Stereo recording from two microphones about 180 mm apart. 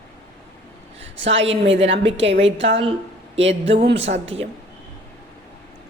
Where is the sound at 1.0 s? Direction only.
90° right.